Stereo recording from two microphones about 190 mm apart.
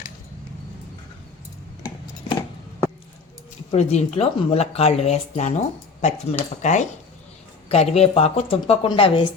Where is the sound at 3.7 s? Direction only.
35° left (ahead or behind).